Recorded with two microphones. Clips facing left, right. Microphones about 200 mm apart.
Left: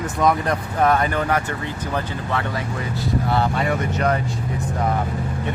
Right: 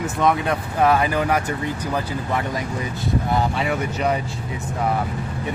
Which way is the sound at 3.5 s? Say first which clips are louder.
Left 1 dB; 5° right (ahead or behind).